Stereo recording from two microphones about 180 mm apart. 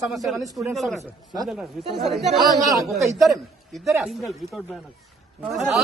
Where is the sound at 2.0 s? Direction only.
Centre (ahead or behind).